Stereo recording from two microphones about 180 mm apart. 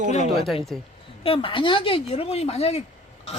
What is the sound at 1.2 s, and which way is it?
Speech, 30° left (ahead or behind).